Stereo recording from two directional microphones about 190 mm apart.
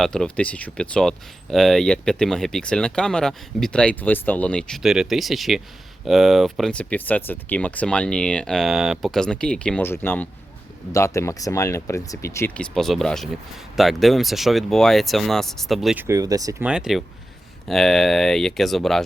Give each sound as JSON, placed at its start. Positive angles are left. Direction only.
{"t": 0.0, "sound": "speech", "side_deg": 5}
{"t": 12.7, "sound": "speech", "side_deg": 0}
{"t": 16.0, "sound": "speech", "side_deg": -20}
{"t": 16.6, "sound": "speech", "side_deg": -5}